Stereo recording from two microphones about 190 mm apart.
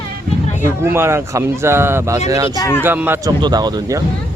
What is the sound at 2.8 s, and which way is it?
Speech, 10° right (ahead or behind).